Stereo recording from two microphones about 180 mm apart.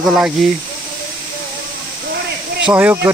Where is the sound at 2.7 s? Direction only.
10° right (ahead or behind).